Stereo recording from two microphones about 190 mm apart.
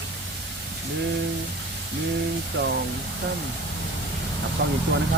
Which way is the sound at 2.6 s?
60° right (ahead or behind).